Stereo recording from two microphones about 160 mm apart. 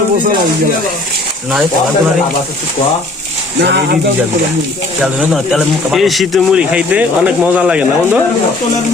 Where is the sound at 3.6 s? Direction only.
90° right.